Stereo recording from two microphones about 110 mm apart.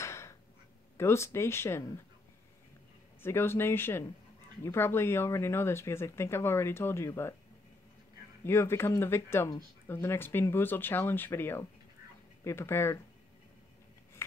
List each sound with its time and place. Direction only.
0.0 s a sound: 25° left (ahead or behind)
0.9 s speech: 25° left (ahead or behind)
3.2 s speech: 20° left (ahead or behind)
8.5 s speech: 25° left (ahead or behind)